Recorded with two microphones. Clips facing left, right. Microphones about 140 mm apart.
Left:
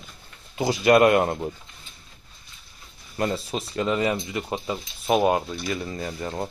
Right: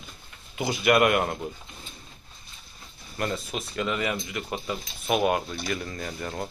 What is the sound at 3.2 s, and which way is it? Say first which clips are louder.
Speech: left 4 dB; 30° left (ahead or behind).